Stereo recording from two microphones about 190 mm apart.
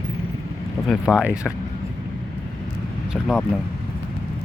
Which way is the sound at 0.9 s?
5° right (ahead or behind).